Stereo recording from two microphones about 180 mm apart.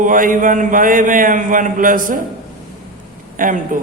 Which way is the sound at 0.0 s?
50° right (ahead or behind).